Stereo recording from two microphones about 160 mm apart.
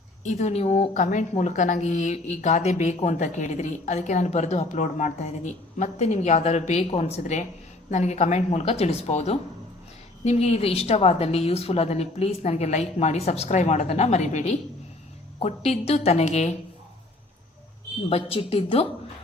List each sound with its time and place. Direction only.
0.3 s a woman's voice: 45° left (ahead or behind)
18.1 s a woman's voice: 35° left (ahead or behind)